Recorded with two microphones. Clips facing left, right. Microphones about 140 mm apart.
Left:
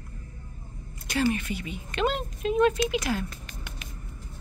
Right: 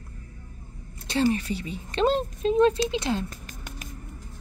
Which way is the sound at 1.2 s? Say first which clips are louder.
Right 2 dB; 35° right (ahead or behind).